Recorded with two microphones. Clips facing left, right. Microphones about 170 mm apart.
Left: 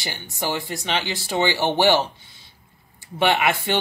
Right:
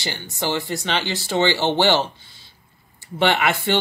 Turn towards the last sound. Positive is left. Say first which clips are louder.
# right 1 dB
turn(degrees=15)  # may be behind; listen again after turning